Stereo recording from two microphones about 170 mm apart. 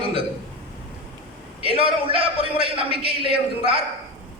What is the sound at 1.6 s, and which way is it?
A man's voice, 35° right (ahead or behind).